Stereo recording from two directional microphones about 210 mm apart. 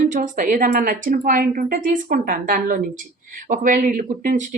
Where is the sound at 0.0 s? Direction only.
40° right (ahead or behind).